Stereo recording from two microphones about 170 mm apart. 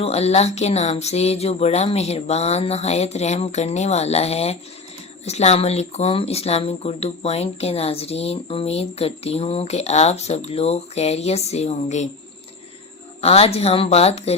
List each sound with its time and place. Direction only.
0.0 s speech: 40° left (ahead or behind)
13.2 s speech: 35° left (ahead or behind)